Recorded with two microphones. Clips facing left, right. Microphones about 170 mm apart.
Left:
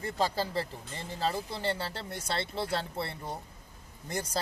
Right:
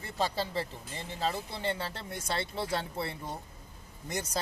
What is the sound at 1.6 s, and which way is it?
Speech, 30° left (ahead or behind).